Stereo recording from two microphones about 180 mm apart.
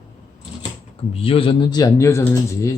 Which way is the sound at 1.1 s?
30° left (ahead or behind).